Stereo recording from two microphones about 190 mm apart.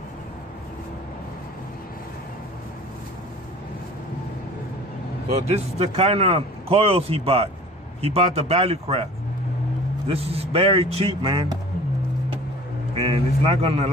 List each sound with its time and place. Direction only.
5.3 s speech: 35° right (ahead or behind)
10.0 s speech: 30° right (ahead or behind)
12.9 s speech: 30° right (ahead or behind)